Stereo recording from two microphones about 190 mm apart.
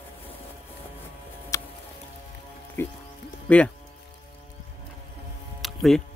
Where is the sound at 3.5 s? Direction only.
5° left (ahead or behind).